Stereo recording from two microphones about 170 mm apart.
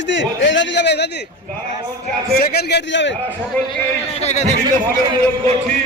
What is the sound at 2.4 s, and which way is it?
Speech, 75° left (ahead or behind).